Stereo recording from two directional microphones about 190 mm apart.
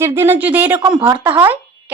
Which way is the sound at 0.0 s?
15° right (ahead or behind).